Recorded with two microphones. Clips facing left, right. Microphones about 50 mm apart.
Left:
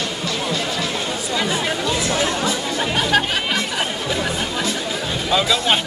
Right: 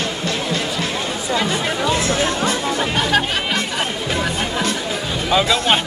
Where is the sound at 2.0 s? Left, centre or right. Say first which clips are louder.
Right 1 dB; right.